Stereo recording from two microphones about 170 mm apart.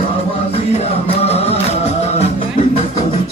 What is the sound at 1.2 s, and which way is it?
Music, 35° left (ahead or behind).